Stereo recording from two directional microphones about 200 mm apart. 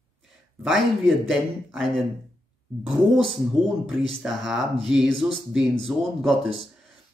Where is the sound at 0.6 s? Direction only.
Centre (ahead or behind).